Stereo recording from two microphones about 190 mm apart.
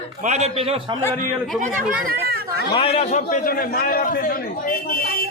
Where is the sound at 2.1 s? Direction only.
55° right (ahead or behind).